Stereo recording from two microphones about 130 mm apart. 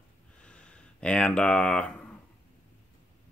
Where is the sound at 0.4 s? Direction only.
10° left (ahead or behind).